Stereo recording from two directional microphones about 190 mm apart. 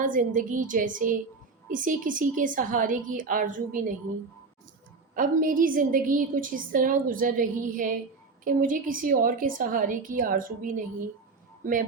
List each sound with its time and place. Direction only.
0.0 s a woman's voice: 45° right (ahead or behind)
5.1 s a woman's voice: 45° right (ahead or behind)